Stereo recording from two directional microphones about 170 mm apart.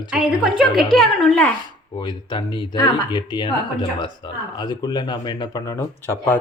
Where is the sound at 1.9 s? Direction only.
25° left (ahead or behind).